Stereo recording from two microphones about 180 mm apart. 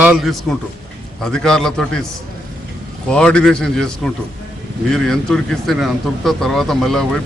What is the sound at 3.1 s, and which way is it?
Speech, 5° left (ahead or behind).